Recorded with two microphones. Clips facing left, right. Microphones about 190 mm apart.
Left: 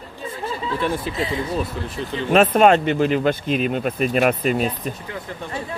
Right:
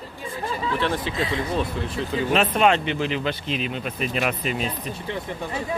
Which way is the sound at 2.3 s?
45° left (ahead or behind).